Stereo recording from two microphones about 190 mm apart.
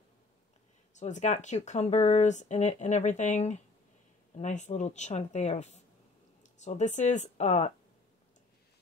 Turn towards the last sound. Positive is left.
turn(degrees=35)  # may be behind; listen again after turning